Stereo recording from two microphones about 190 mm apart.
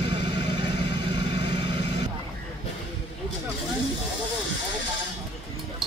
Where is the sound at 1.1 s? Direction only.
30° right (ahead or behind).